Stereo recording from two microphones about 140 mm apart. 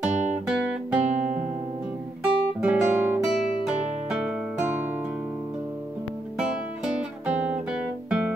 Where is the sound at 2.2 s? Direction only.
10° right (ahead or behind).